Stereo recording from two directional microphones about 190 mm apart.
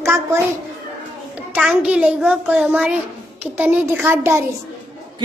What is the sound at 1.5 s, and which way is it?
A child's voice, 5° right (ahead or behind).